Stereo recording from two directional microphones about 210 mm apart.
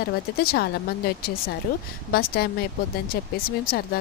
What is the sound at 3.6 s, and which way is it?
Speech, 45° left (ahead or behind).